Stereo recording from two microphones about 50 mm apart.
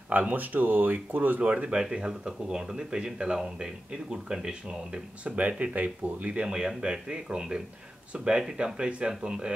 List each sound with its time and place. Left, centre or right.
0.3 s speech: right
1.4 s speech: right
1.8 s speech: centre
6.5 s speech: centre